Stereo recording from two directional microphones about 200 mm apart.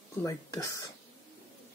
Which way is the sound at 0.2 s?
15° left (ahead or behind).